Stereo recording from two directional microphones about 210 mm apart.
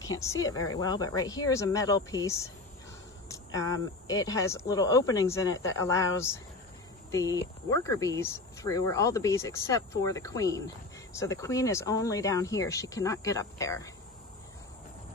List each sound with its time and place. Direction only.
0.2 s speech: 15° left (ahead or behind)